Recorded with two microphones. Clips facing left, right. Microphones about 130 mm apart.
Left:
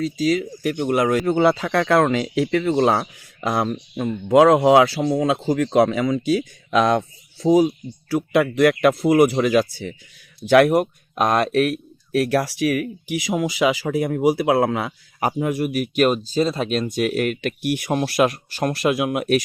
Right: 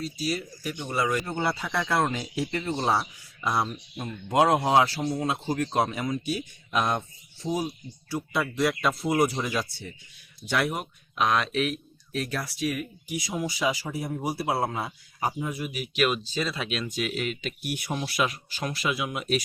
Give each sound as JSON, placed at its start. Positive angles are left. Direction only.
{"t": 0.0, "sound": "speech", "side_deg": 90}
{"t": 10.5, "sound": "speech", "side_deg": 70}
{"t": 11.1, "sound": "speech", "side_deg": 45}
{"t": 16.9, "sound": "speech", "side_deg": 55}